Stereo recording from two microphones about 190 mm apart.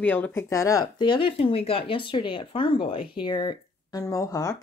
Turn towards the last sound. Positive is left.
turn(degrees=15)  # may be behind; listen again after turning